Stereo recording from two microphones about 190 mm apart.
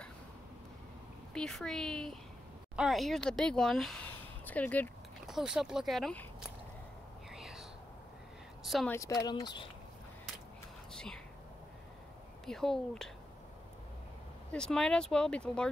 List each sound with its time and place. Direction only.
1.3 s speech: 5° left (ahead or behind)
5.2 s speech: centre (ahead or behind)
7.2 s whispering: centre (ahead or behind)
8.6 s speech: centre (ahead or behind)
8.9 s speech: 20° left (ahead or behind)
10.9 s whispering: 5° left (ahead or behind)
12.4 s speech: centre (ahead or behind)
14.5 s speech: 5° left (ahead or behind)